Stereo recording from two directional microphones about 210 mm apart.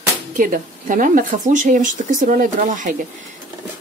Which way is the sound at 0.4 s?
40° right (ahead or behind).